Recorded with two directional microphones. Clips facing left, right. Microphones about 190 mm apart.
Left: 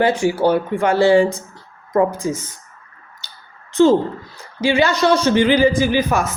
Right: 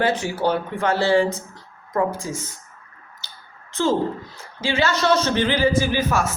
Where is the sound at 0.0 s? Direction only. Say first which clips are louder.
Left 5 dB; 10° left (ahead or behind).